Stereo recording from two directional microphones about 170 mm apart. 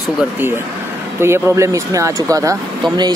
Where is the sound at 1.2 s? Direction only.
15° right (ahead or behind).